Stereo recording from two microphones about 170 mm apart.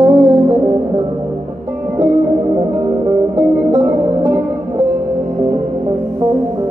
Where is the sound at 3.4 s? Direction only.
25° right (ahead or behind).